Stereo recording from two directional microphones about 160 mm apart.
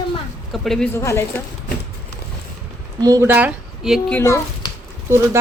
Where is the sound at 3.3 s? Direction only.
10° right (ahead or behind).